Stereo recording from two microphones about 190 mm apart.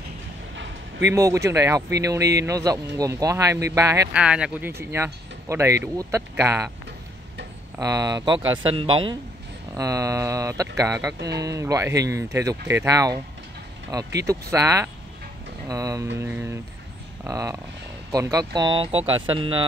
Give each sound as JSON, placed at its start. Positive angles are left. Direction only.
{"t": 0.6, "sound": "a sound", "side_deg": -70}
{"t": 1.1, "sound": "speech", "side_deg": -15}
{"t": 4.2, "sound": "speech", "side_deg": -5}
{"t": 7.8, "sound": "speech", "side_deg": -20}
{"t": 9.8, "sound": "speech", "side_deg": -15}